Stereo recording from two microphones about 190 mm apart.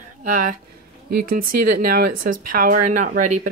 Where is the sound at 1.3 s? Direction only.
50° right (ahead or behind).